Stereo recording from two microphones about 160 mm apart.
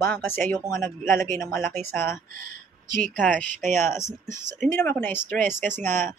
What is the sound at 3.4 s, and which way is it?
Speech, 50° right (ahead or behind).